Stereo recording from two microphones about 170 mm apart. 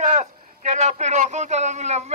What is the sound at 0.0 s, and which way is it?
A man's voice, 45° right (ahead or behind).